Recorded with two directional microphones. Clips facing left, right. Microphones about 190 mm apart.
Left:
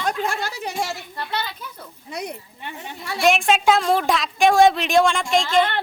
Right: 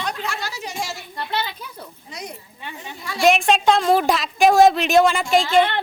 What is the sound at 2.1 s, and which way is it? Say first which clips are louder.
Speech: left 6 dB; 60° left (ahead or behind).